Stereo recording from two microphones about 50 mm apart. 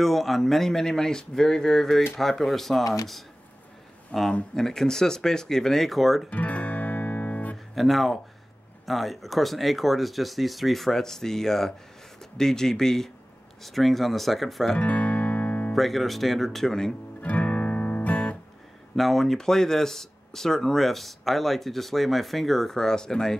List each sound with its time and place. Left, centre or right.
0.0 s speech: centre
6.3 s guitar: left
7.7 s speech: centre
14.8 s music: left
15.7 s speech: centre
17.2 s guitar: left
18.9 s speech: centre